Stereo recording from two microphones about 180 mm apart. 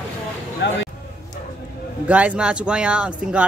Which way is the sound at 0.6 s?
75° left (ahead or behind).